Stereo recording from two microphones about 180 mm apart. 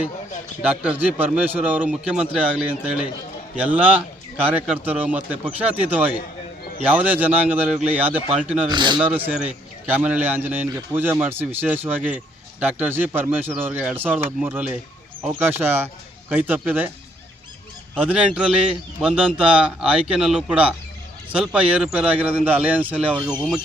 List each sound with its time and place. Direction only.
0.6 s a man's voice: 10° right (ahead or behind)
8.6 s speech: 25° right (ahead or behind)
9.0 s a man's voice: 10° right (ahead or behind)
17.9 s a man's voice: 10° right (ahead or behind)